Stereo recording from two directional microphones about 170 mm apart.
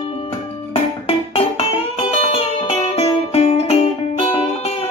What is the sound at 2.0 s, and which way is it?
Music, 35° left (ahead or behind).